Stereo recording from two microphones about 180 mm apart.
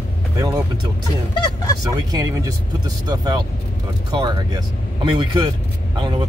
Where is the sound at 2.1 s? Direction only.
20° right (ahead or behind).